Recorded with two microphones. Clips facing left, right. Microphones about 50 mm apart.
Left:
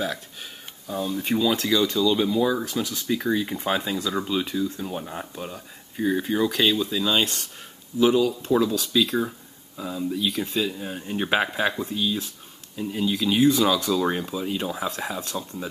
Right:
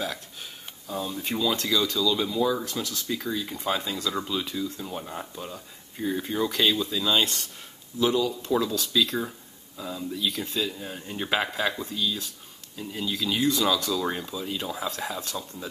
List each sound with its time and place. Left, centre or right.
0.0 s speech: centre
1.9 s speech: left
2.2 s speech: centre
3.2 s speech: left; by 7.2 s centre
8.3 s speech: centre